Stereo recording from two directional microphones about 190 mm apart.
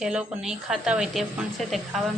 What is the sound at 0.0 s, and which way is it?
A woman's voice, 5° right (ahead or behind).